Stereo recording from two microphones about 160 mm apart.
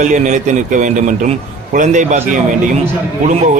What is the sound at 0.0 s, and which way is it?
A man's voice, 50° right (ahead or behind).